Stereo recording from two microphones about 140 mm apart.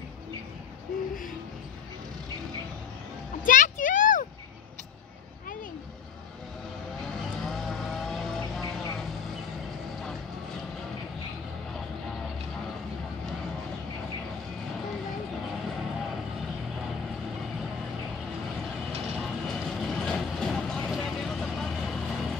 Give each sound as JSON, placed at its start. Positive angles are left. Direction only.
{"t": 3.4, "sound": "a sound", "side_deg": 65}
{"t": 7.0, "sound": "vehicle", "side_deg": 5}
{"t": 19.4, "sound": "vehicle", "side_deg": 0}